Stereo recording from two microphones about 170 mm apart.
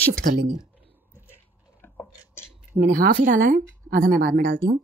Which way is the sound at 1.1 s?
10° right (ahead or behind).